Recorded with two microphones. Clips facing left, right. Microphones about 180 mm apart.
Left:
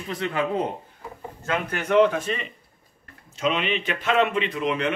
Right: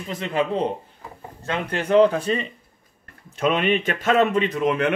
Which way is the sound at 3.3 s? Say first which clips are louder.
Right 4 dB; 55° right (ahead or behind).